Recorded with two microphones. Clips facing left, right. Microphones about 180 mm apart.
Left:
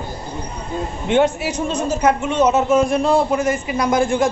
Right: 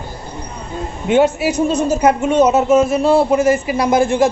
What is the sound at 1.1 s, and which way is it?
A woman's voice, 5° right (ahead or behind).